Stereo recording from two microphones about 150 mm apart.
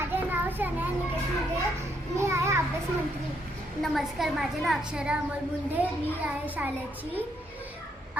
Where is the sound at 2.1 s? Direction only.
20° right (ahead or behind).